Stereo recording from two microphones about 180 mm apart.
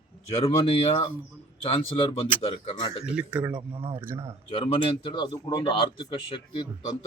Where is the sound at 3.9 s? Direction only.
15° right (ahead or behind).